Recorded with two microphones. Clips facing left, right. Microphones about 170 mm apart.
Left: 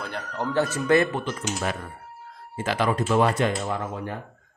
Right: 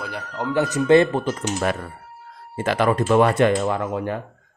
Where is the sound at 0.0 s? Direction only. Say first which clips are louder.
Right 2 dB; 10° right (ahead or behind); by 1.2 s 25° right (ahead or behind).